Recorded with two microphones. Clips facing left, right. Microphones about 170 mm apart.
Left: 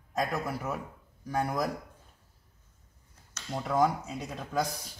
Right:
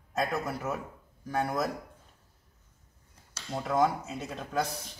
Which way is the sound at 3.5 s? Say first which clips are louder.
Even; 5° right (ahead or behind).